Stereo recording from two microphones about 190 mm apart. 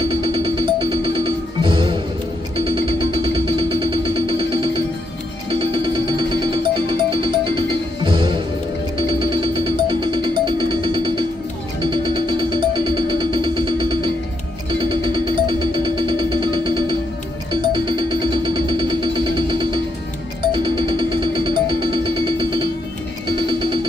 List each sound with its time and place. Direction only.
0.1 s music: 25° right (ahead or behind)